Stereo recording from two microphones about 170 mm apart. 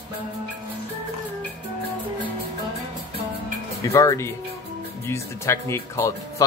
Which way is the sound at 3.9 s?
20° left (ahead or behind).